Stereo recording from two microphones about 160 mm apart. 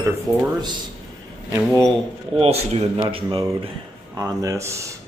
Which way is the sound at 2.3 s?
40° right (ahead or behind).